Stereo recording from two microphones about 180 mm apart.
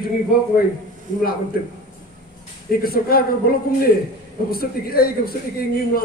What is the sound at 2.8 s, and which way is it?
Speech, 55° left (ahead or behind).